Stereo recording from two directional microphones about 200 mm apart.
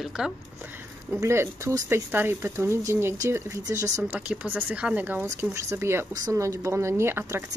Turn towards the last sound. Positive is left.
turn(degrees=-10)  # may be behind; listen again after turning